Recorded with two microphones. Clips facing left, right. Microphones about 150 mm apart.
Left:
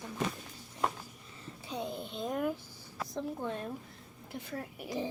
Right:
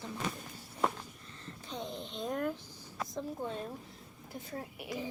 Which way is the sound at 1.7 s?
10° left (ahead or behind).